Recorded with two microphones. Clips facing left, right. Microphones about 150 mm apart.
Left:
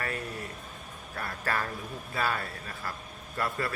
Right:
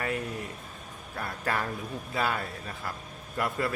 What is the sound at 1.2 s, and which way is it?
A man's voice, 15° right (ahead or behind).